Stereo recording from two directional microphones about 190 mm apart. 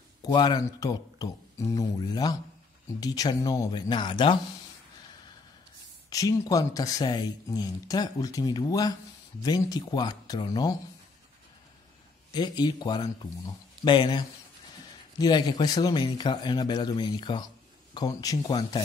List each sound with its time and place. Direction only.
0.2 s speech: 25° left (ahead or behind)
6.0 s speech: 20° left (ahead or behind)
12.3 s speech: 20° left (ahead or behind)